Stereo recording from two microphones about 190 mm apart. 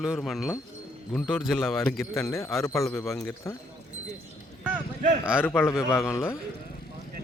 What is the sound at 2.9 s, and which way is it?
Speech, centre (ahead or behind).